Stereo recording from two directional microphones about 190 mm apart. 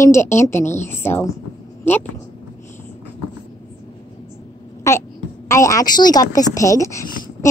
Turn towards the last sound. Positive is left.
turn(degrees=15)  # may be behind; listen again after turning